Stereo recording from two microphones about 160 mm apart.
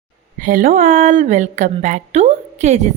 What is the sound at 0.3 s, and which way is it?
A woman's voice, 60° right (ahead or behind).